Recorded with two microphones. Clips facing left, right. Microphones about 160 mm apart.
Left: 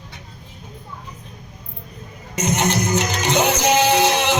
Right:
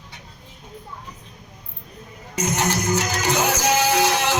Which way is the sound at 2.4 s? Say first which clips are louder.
Left 3 dB; 20° left (ahead or behind).